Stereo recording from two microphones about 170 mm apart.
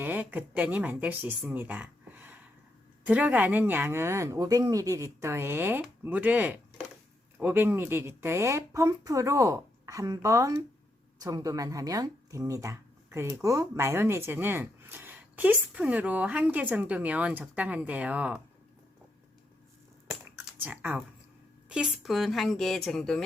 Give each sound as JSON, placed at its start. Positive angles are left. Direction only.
{"t": 0.0, "sound": "speech", "side_deg": -10}
{"t": 1.5, "sound": "a sound", "side_deg": -10}
{"t": 3.0, "sound": "speech", "side_deg": -10}
{"t": 20.5, "sound": "speech", "side_deg": -10}